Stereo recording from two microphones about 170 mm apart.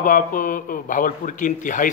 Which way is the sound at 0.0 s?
50° left (ahead or behind).